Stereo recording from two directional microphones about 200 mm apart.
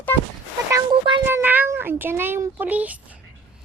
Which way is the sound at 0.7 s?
25° right (ahead or behind).